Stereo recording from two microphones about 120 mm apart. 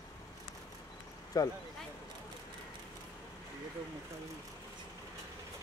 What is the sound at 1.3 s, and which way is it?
Speech, 30° left (ahead or behind).